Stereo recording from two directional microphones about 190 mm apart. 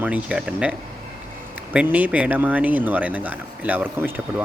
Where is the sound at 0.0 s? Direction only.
5° right (ahead or behind).